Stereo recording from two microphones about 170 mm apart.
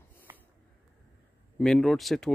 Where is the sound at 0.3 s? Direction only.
15° right (ahead or behind).